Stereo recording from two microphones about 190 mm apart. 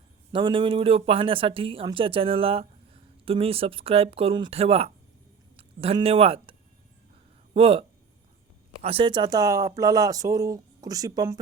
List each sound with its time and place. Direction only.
0.3 s speech: 25° right (ahead or behind)